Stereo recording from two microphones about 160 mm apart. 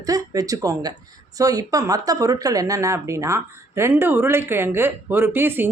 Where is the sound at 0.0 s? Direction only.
20° right (ahead or behind).